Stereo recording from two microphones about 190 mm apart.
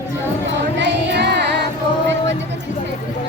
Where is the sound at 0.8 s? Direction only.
65° right (ahead or behind).